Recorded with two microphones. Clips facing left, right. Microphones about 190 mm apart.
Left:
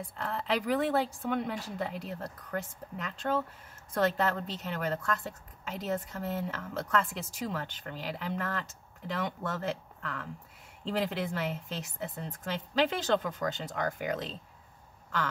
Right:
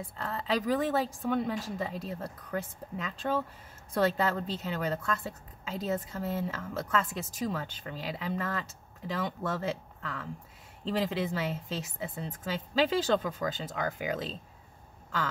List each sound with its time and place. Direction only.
0.2 s a woman's voice: centre (ahead or behind)